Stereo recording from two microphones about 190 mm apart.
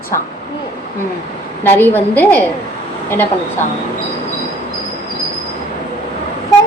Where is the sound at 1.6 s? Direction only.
10° left (ahead or behind).